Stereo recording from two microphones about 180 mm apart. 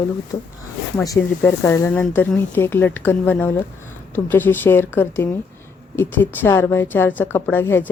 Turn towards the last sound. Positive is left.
turn(degrees=10)  # may be behind; listen again after turning